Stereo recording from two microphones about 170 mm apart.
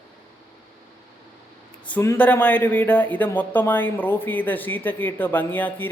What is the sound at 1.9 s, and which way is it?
Speech, 15° left (ahead or behind).